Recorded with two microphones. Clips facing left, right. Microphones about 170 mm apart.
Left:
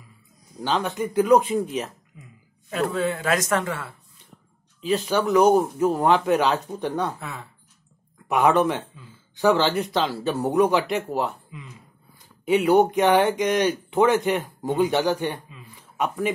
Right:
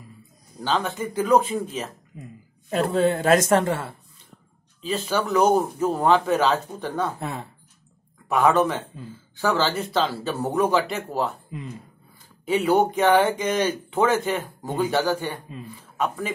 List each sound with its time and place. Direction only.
0.6 s speech: 10° left (ahead or behind)
2.1 s speech: 40° right (ahead or behind)
5.0 s speech: 10° left (ahead or behind)
7.2 s speech: 35° right (ahead or behind)
8.3 s speech: 15° left (ahead or behind)
12.4 s speech: 15° left (ahead or behind)